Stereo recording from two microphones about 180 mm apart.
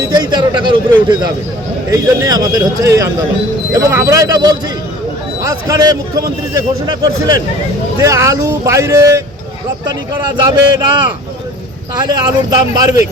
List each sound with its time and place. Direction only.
0.0 s speech: 20° right (ahead or behind)
12.0 s speech: 25° right (ahead or behind)